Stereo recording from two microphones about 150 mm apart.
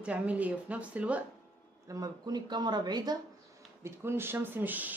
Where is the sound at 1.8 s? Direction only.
25° right (ahead or behind).